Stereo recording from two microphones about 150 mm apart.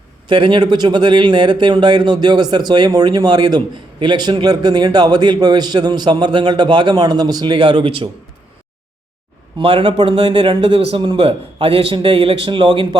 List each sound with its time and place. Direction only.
0.3 s a man's voice: 35° right (ahead or behind)
9.6 s speech: 35° right (ahead or behind)